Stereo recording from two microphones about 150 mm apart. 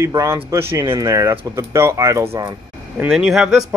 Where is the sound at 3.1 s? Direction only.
5° right (ahead or behind).